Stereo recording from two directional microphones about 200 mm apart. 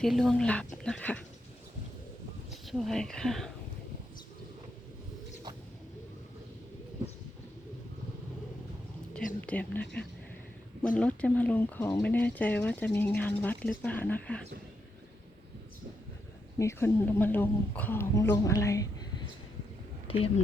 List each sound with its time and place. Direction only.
0.0 s speech: centre (ahead or behind)
2.6 s speech: centre (ahead or behind)
9.4 s speech: 10° left (ahead or behind)
16.6 s speech: 10° left (ahead or behind)
20.1 s speech: 30° left (ahead or behind)